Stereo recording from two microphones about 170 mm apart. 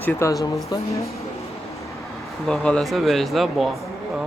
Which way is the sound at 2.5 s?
5° left (ahead or behind).